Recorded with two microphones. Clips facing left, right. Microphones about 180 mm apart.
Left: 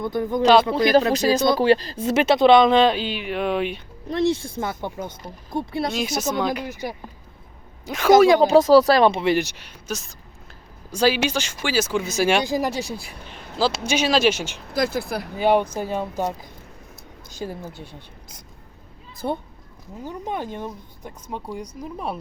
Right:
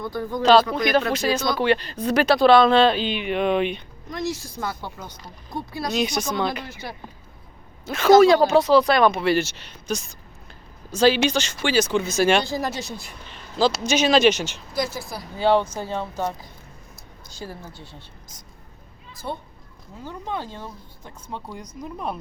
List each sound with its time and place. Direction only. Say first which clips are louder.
0.0 s speech: left 3 dB; 20° left (ahead or behind)
0.7 s speech: left 4 dB; 30° left (ahead or behind); by 3.8 s 5° left (ahead or behind)
4.1 s speech: left 7 dB; 30° left (ahead or behind)
6.0 s speech: right 3 dB; 5° left (ahead or behind)
7.9 s speech: even; 15° left (ahead or behind)
8.4 s speech: left 3 dB; 40° left (ahead or behind); by 14.6 s 10° left (ahead or behind)
14.7 s speech: left 6 dB; 55° left (ahead or behind)
15.4 s speech: even; 15° left (ahead or behind)
19.2 s a child's voice: left 5 dB; 50° left (ahead or behind)
20.1 s speech: left 2 dB; 15° left (ahead or behind)